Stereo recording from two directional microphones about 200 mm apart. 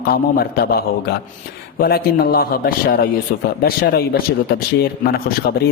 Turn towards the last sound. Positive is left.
turn(degrees=50)  # may be behind; listen again after turning